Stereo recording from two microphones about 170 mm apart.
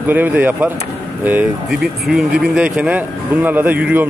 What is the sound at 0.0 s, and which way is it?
Speech, 10° right (ahead or behind).